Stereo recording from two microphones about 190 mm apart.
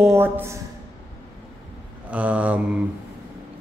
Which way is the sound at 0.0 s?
10° right (ahead or behind).